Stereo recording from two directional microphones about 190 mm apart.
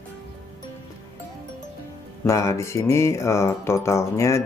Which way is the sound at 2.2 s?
15° left (ahead or behind).